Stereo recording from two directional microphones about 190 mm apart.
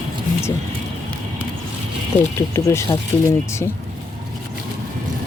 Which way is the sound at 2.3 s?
15° left (ahead or behind).